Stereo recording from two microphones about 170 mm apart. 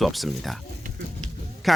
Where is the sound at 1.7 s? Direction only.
Centre (ahead or behind).